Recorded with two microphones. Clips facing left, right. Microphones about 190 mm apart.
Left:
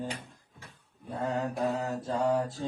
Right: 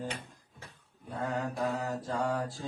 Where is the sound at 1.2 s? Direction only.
25° left (ahead or behind).